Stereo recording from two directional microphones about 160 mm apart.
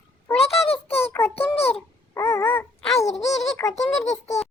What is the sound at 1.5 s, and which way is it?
Babbling, 35° left (ahead or behind).